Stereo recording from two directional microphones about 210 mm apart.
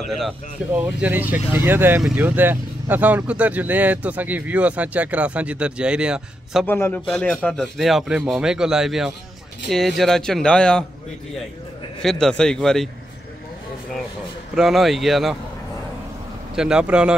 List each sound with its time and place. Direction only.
0.7 s speech: 10° right (ahead or behind)
6.6 s speech: 10° left (ahead or behind)
12.0 s speech: centre (ahead or behind)
14.5 s speech: centre (ahead or behind)
16.5 s speech: 5° right (ahead or behind)